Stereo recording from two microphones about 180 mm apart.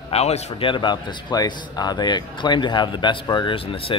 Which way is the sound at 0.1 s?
35° left (ahead or behind).